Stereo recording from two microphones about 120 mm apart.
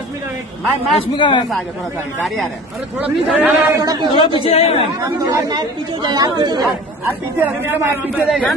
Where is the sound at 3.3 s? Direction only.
15° right (ahead or behind).